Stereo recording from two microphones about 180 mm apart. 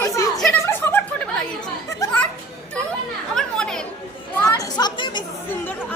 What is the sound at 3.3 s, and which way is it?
Chatter, 5° left (ahead or behind).